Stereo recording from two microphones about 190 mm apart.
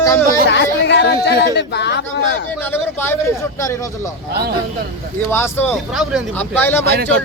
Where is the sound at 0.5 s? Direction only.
65° left (ahead or behind).